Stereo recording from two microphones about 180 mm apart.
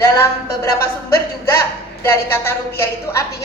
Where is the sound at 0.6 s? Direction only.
15° left (ahead or behind).